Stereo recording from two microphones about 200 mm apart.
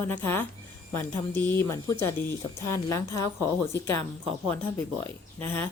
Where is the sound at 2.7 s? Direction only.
15° left (ahead or behind).